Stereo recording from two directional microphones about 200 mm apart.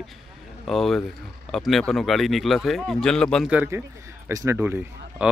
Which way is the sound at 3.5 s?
10° right (ahead or behind).